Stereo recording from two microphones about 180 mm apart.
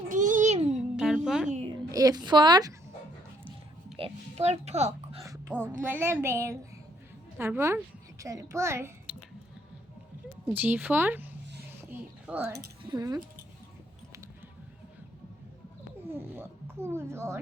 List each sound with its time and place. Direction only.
0.1 s a sound: 45° right (ahead or behind)
0.7 s music: 5° right (ahead or behind)
1.6 s a woman's voice: 20° right (ahead or behind)
3.9 s oink: 35° right (ahead or behind)
5.2 s a sound: 15° right (ahead or behind)
5.8 s a woman's voice: 10° right (ahead or behind)
10.5 s a woman's voice: 10° right (ahead or behind)
11.9 s a sound: 10° right (ahead or behind)
12.9 s speech: 20° right (ahead or behind)
16.0 s a child's voice: 10° right (ahead or behind)